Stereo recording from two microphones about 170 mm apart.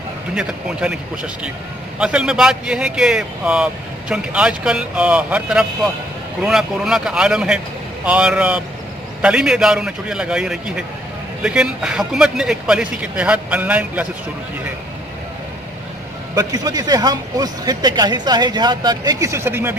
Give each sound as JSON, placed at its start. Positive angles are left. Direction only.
{"t": 0.3, "sound": "speech", "side_deg": -5}
{"t": 16.3, "sound": "speech", "side_deg": -20}